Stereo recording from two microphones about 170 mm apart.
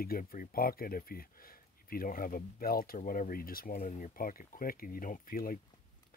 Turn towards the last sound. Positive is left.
turn(degrees=55)  # may be behind; listen again after turning